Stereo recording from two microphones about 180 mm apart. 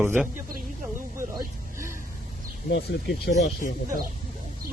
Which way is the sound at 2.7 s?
65° left (ahead or behind).